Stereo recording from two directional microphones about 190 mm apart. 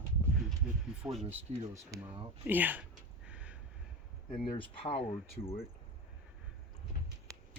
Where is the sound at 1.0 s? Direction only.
Centre (ahead or behind).